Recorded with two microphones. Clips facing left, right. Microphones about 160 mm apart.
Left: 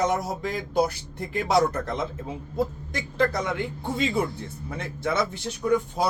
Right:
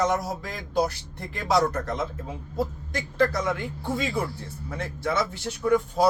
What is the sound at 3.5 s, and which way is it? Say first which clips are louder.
Speech: left 1 dB; 20° left (ahead or behind).